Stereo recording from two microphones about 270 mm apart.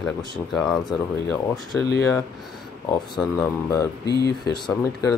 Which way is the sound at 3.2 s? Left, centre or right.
Centre.